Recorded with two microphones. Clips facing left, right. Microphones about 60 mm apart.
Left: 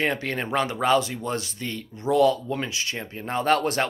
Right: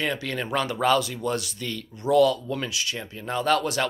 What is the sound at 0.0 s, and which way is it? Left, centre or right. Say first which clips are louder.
Speech: left 2 dB; left.